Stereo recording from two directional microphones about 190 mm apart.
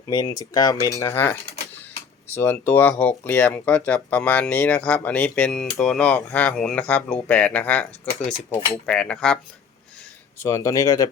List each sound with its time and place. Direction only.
0.1 s speech: 20° left (ahead or behind)
8.9 s cutlery: 5° left (ahead or behind)
10.3 s speech: 15° left (ahead or behind)